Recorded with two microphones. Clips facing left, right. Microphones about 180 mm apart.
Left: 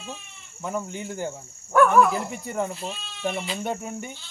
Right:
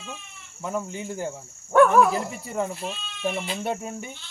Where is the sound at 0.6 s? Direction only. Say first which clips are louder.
Even; centre (ahead or behind).